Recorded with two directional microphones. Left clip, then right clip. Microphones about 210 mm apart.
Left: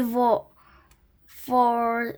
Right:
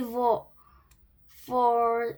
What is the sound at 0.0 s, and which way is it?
A child's voice, 55° left (ahead or behind).